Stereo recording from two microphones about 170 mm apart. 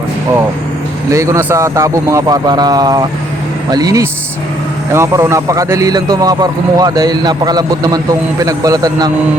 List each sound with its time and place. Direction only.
1.1 s speech: 20° right (ahead or behind)